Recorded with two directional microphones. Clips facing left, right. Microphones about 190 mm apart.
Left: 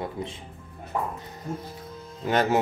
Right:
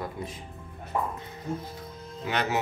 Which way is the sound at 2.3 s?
45° left (ahead or behind).